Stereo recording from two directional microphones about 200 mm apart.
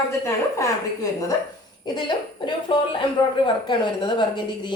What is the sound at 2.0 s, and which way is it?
A woman's voice, 25° left (ahead or behind).